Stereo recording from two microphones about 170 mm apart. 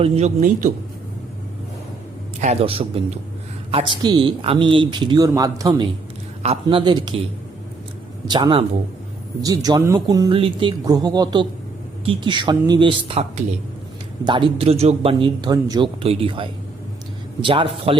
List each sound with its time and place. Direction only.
0.0 s a man's voice: 40° right (ahead or behind)
2.4 s a man's voice: 40° right (ahead or behind); by 5.9 s 25° right (ahead or behind)
6.4 s a man's voice: 35° right (ahead or behind)
8.3 s speech: 25° right (ahead or behind)
9.6 s a man's voice: 25° right (ahead or behind)